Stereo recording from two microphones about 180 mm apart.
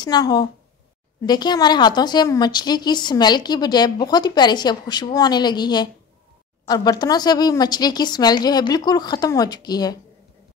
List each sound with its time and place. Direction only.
0.0 s a woman's voice: 20° left (ahead or behind)